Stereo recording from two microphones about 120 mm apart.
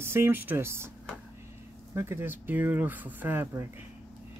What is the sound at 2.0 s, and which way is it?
Speech, 20° right (ahead or behind).